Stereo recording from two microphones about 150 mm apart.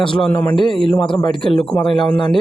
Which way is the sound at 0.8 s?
35° left (ahead or behind).